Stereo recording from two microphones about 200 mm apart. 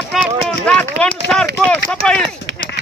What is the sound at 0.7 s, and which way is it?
Speech, 5° left (ahead or behind).